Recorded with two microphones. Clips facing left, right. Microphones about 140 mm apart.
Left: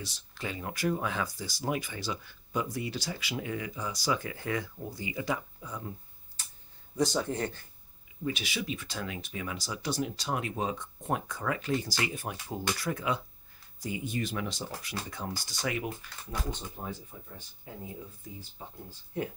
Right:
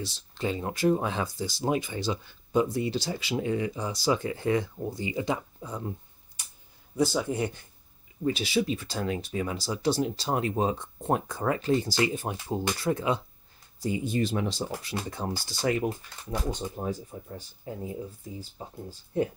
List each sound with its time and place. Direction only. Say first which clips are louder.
0.0 s speech: right 7 dB; 30° right (ahead or behind)
6.4 s a sound: even; 15° right (ahead or behind)
7.0 s speech: right 3 dB; 5° right (ahead or behind)
8.2 s speech: right 8 dB; 35° right (ahead or behind)